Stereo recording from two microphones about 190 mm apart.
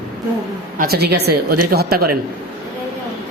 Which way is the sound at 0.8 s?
55° right (ahead or behind).